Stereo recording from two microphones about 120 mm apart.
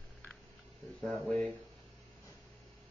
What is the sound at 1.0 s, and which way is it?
Speech, 5° left (ahead or behind).